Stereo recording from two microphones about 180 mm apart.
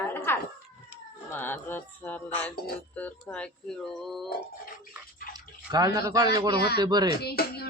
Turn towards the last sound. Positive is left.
turn(degrees=60)  # may be behind; listen again after turning